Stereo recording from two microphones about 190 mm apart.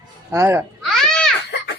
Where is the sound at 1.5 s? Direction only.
65° left (ahead or behind).